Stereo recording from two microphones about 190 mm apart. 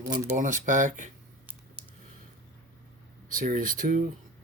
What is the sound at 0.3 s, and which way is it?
Speech, 40° right (ahead or behind).